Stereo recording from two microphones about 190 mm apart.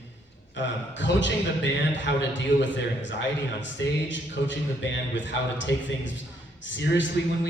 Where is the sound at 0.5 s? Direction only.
70° left (ahead or behind).